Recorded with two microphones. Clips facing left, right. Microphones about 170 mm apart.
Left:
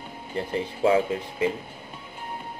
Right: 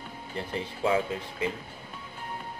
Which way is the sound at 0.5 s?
50° left (ahead or behind).